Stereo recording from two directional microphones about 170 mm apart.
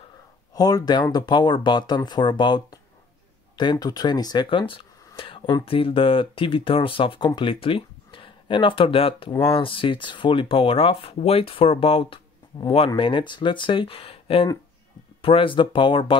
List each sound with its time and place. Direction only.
0.5 s speech: 20° left (ahead or behind)